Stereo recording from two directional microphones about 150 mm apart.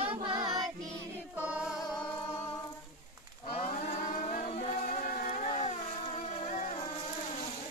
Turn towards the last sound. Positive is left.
turn(degrees=55)  # may be behind; listen again after turning